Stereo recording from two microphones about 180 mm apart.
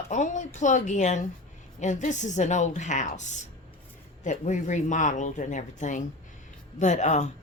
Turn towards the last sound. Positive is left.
turn(degrees=40)  # may be behind; listen again after turning